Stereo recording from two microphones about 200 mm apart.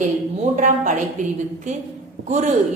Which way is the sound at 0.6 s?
35° right (ahead or behind).